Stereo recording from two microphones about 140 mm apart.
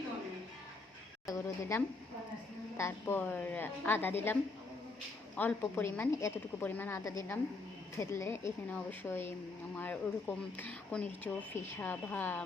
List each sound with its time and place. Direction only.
1.3 s a woman's voice: 20° left (ahead or behind)
5.4 s a woman's voice: 15° left (ahead or behind)